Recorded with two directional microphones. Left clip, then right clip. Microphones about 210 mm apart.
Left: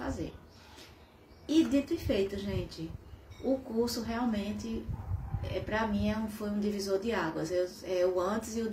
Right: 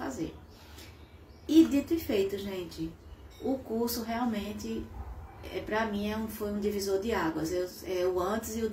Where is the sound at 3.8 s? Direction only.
10° left (ahead or behind).